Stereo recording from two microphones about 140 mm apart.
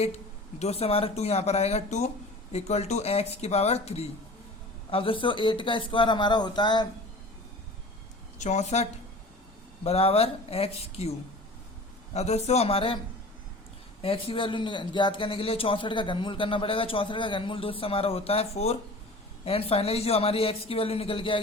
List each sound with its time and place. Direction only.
0.6 s a man's voice: 45° left (ahead or behind); by 6.8 s 30° left (ahead or behind)
8.4 s a man's voice: 55° left (ahead or behind)
12.1 s a man's voice: 50° left (ahead or behind)
14.0 s a man's voice: 40° left (ahead or behind)